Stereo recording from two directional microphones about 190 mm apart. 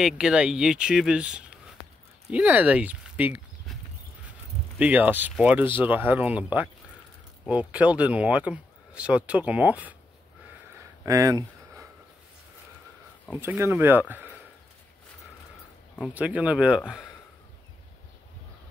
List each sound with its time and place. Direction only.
0.0 s speech: 5° right (ahead or behind)
4.7 s speech: 10° right (ahead or behind)
11.1 s a sound: 15° right (ahead or behind)
13.3 s speech: 10° right (ahead or behind)
16.0 s speech: 10° right (ahead or behind)